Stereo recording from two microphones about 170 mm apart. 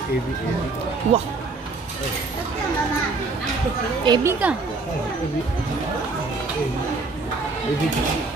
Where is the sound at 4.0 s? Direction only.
20° right (ahead or behind).